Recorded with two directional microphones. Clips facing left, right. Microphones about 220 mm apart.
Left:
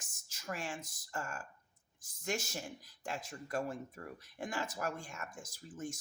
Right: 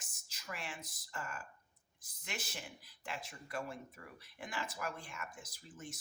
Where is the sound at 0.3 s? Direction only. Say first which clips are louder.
Left 5 dB; 45° left (ahead or behind).